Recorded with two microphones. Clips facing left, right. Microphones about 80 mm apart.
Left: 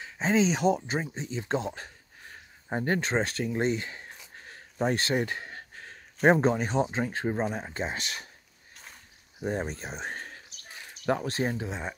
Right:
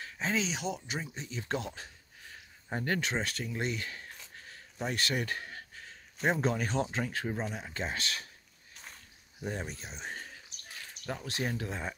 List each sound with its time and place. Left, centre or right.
0.0 s a sound: left
0.5 s speech: left
4.4 s a sound: left
6.2 s speech: centre
6.5 s speech: left
9.4 s speech: left
11.2 s speech: left
11.5 s speech: centre